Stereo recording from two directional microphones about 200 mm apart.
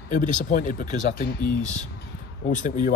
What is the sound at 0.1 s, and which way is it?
Speech, 40° left (ahead or behind).